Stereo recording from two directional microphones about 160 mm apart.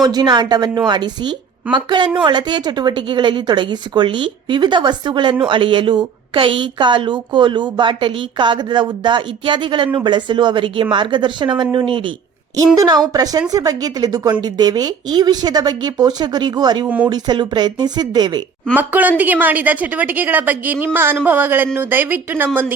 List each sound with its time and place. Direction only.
0.0 s speech: 25° right (ahead or behind)
18.7 s a woman's voice: 10° right (ahead or behind)